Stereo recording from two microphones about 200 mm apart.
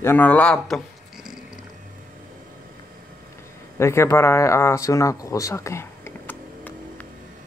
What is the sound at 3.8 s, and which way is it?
Speech, 15° left (ahead or behind).